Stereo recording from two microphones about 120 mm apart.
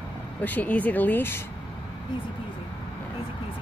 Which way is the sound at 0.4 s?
15° left (ahead or behind).